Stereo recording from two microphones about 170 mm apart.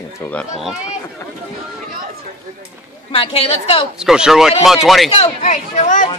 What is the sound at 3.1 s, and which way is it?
Speech, 35° left (ahead or behind).